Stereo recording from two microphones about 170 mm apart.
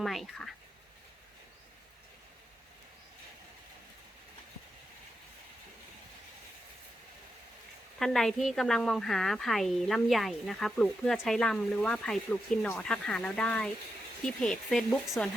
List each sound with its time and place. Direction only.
0.0 s speech: centre (ahead or behind)
7.9 s speech: centre (ahead or behind)